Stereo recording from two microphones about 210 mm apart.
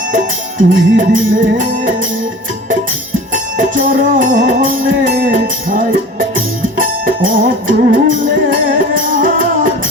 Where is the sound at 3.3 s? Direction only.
40° right (ahead or behind).